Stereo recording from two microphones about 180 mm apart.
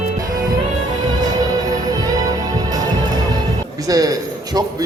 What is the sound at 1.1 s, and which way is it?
Music, 20° right (ahead or behind).